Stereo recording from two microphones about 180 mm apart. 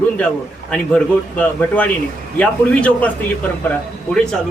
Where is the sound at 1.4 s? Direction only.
10° left (ahead or behind).